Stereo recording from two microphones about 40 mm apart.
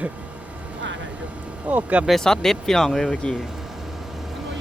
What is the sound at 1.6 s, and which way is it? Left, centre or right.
Speech, right.